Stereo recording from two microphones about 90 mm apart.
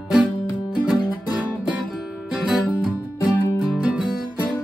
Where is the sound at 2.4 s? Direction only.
10° right (ahead or behind).